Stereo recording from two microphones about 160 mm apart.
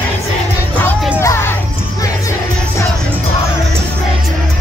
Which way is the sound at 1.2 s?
15° left (ahead or behind).